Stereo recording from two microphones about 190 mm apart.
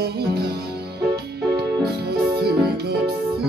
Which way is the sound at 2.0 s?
55° right (ahead or behind).